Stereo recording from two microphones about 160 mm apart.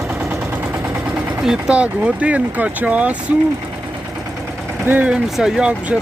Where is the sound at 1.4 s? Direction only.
5° right (ahead or behind).